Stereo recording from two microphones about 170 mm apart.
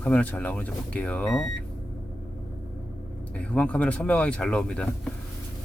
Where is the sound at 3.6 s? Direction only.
5° left (ahead or behind).